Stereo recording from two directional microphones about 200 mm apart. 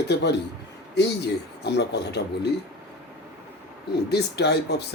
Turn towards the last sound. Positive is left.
turn(degrees=55)  # may be behind; listen again after turning